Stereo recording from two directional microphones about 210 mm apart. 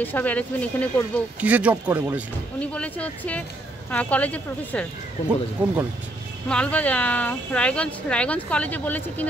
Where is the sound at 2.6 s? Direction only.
5° left (ahead or behind).